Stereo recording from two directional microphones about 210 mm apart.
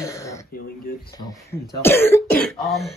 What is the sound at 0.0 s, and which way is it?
Throat clearing, 15° left (ahead or behind).